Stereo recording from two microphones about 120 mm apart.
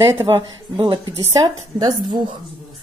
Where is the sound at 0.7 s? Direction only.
40° right (ahead or behind).